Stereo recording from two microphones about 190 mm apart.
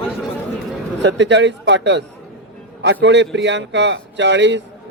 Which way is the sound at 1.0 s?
70° right (ahead or behind).